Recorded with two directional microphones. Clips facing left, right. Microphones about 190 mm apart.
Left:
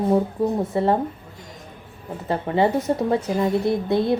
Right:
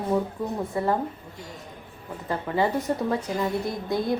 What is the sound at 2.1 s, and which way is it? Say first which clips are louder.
A woman's voice: left 4 dB; 25° left (ahead or behind).